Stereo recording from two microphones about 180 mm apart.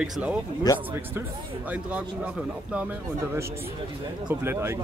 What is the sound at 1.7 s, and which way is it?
A man's voice, 10° right (ahead or behind).